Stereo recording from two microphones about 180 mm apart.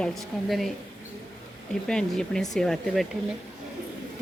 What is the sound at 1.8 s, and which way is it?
Speech, 5° left (ahead or behind).